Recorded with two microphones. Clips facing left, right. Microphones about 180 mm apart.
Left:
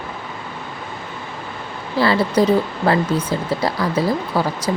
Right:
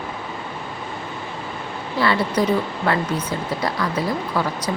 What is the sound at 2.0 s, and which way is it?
A woman's voice, 35° left (ahead or behind).